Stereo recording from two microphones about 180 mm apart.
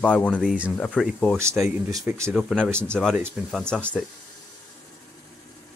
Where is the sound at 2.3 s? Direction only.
Centre (ahead or behind).